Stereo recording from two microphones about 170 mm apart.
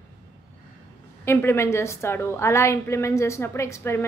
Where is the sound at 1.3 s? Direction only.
15° left (ahead or behind).